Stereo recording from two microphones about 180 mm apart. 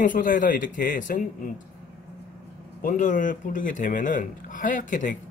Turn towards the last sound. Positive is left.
turn(degrees=45)  # may be behind; listen again after turning